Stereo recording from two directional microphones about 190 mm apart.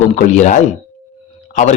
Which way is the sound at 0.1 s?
40° left (ahead or behind).